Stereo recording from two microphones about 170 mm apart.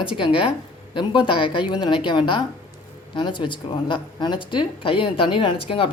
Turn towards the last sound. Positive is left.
turn(degrees=30)  # may be behind; listen again after turning